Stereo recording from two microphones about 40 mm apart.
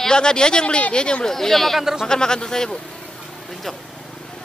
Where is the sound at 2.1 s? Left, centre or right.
Centre.